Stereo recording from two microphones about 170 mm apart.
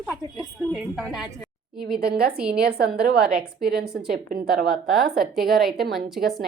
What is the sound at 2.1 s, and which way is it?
A woman's voice, 65° right (ahead or behind).